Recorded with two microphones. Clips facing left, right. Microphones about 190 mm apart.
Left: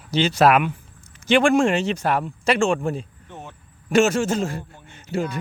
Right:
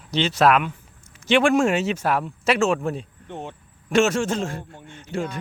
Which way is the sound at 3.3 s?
25° right (ahead or behind).